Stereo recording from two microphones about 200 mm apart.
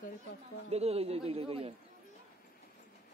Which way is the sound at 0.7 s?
30° right (ahead or behind).